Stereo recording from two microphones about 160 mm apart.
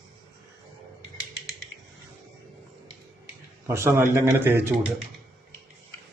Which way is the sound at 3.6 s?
15° right (ahead or behind).